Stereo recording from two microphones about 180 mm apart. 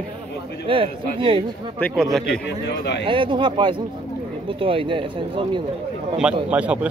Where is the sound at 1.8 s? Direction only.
Centre (ahead or behind).